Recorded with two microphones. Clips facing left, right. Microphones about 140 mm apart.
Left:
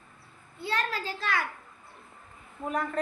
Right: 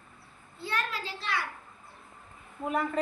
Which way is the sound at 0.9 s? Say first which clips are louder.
Left 3 dB; 45° left (ahead or behind).